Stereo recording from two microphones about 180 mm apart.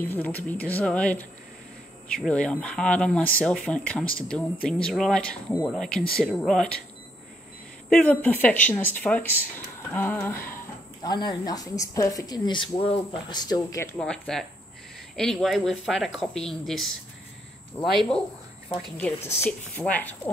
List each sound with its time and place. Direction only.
0.0 s speech: 10° left (ahead or behind)
7.9 s speech: 10° left (ahead or behind)
11.1 s speech: 20° left (ahead or behind)
13.9 s speech: 5° left (ahead or behind)